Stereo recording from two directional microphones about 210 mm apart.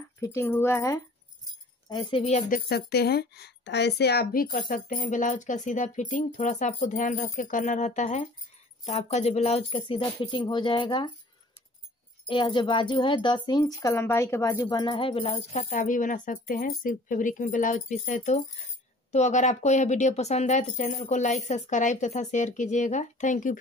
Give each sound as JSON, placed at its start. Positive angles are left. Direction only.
{"t": 0.2, "sound": "speech", "side_deg": 15}
{"t": 1.9, "sound": "speech", "side_deg": 25}
{"t": 2.7, "sound": "a woman's voice", "side_deg": 50}
{"t": 12.3, "sound": "a woman's voice", "side_deg": 25}